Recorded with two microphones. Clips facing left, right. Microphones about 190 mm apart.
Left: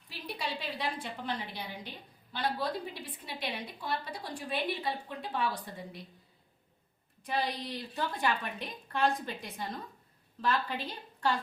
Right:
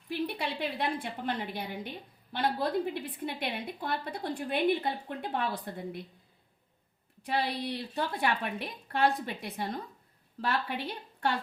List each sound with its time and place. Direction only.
0.1 s a woman's voice: 60° right (ahead or behind)
7.2 s a woman's voice: 65° right (ahead or behind)